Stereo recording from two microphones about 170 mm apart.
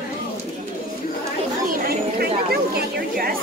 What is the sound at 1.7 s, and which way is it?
Chatter, 65° right (ahead or behind).